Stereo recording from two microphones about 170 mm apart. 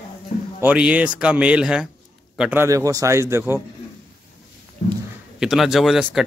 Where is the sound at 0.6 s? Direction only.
10° right (ahead or behind).